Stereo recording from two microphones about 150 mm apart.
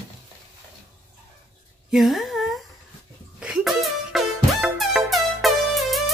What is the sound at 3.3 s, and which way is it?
Music, 5° right (ahead or behind).